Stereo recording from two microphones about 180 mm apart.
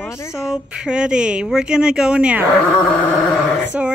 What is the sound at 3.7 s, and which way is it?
Speech, 5° right (ahead or behind).